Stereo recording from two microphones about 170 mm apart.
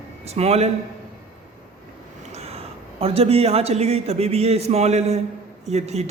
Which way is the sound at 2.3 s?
35° right (ahead or behind).